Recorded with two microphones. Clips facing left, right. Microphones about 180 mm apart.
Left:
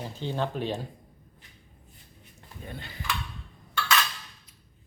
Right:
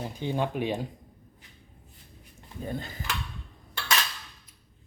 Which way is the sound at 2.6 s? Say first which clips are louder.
Right 7 dB; 40° right (ahead or behind).